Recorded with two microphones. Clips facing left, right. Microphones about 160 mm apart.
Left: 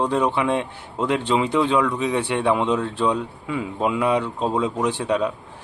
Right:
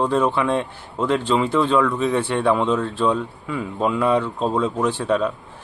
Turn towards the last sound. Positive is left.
turn(degrees=15)  # may be behind; listen again after turning